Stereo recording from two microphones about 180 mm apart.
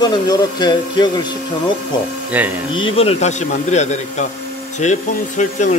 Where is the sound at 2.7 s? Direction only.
30° left (ahead or behind).